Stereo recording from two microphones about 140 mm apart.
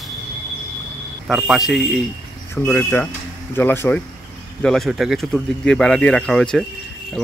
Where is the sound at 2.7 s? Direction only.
20° left (ahead or behind).